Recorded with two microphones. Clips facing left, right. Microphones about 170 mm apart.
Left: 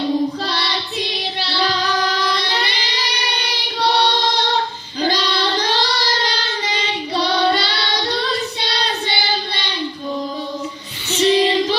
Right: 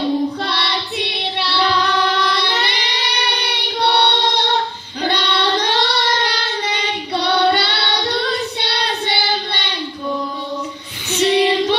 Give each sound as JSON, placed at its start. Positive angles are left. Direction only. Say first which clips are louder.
{"t": 0.4, "sound": "child singing", "louder": "right 1 dB", "side_deg": -60}
{"t": 3.4, "sound": "choir", "louder": "even", "side_deg": -65}
{"t": 4.9, "sound": "child singing", "louder": "even", "side_deg": -65}
{"t": 11.2, "sound": "child singing", "louder": "even", "side_deg": -65}